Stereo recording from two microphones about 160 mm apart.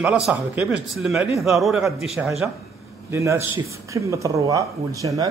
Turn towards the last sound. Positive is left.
turn(degrees=-20)  # may be behind; listen again after turning